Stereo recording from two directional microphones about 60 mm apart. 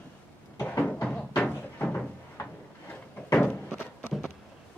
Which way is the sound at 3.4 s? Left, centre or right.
Centre.